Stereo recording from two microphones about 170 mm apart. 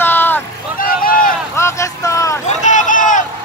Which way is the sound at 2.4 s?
45° left (ahead or behind).